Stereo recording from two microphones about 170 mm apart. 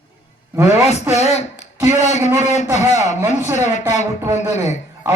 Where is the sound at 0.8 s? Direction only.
40° left (ahead or behind).